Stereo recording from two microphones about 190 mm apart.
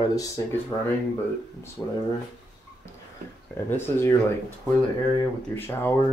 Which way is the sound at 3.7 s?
10° left (ahead or behind).